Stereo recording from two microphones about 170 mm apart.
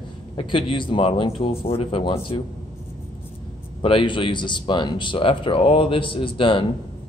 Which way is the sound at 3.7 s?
30° left (ahead or behind).